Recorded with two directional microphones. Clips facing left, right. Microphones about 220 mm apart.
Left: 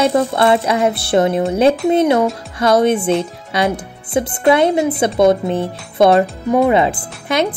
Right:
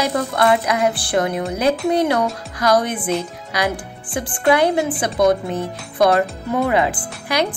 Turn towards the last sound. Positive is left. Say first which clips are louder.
# left 3 dB
turn(degrees=25)  # may be behind; listen again after turning